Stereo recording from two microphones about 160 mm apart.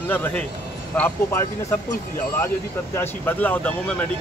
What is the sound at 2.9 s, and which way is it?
Speech, 10° left (ahead or behind).